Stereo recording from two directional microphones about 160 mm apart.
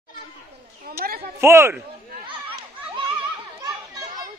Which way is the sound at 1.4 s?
15° right (ahead or behind).